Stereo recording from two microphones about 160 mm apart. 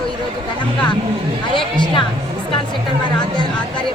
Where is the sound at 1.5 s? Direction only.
30° left (ahead or behind).